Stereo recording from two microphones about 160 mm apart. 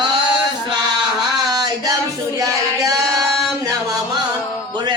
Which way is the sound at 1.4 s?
25° right (ahead or behind).